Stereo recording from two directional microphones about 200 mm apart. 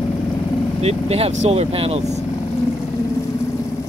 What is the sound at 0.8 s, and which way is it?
Speech, 30° right (ahead or behind).